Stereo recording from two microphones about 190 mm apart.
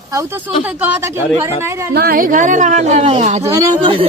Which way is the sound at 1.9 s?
50° right (ahead or behind).